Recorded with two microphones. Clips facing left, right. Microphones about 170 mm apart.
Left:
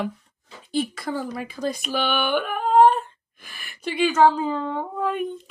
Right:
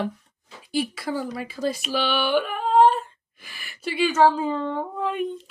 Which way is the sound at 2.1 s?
50° left (ahead or behind).